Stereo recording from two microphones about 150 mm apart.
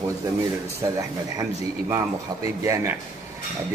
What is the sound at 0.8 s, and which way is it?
Speech, 20° right (ahead or behind).